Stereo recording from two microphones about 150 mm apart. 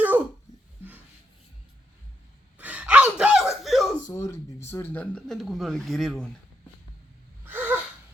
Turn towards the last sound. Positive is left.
turn(degrees=-10)  # may be behind; listen again after turning